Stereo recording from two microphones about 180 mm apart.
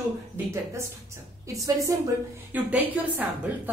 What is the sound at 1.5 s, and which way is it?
A woman's voice, 15° right (ahead or behind).